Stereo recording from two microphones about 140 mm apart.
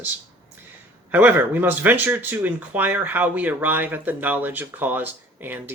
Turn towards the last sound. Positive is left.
turn(degrees=-15)  # may be behind; listen again after turning